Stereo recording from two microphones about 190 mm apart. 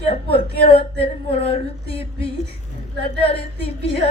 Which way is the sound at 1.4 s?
30° left (ahead or behind).